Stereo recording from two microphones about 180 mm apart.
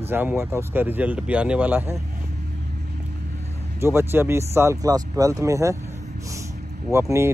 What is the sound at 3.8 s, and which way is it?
Speech, 15° right (ahead or behind).